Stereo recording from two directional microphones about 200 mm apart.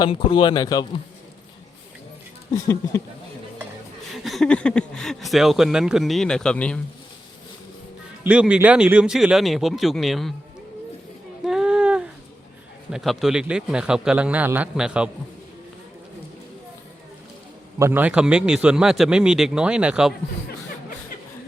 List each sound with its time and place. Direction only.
0.0 s speech: 25° left (ahead or behind)
4.1 s speech: centre (ahead or behind)
8.2 s speech: 5° right (ahead or behind)
11.4 s a sound: 5° right (ahead or behind)
12.9 s speech: centre (ahead or behind)
17.7 s speech: 10° right (ahead or behind)